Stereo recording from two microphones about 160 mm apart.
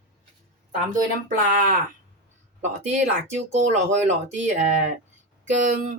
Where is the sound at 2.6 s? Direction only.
45° right (ahead or behind).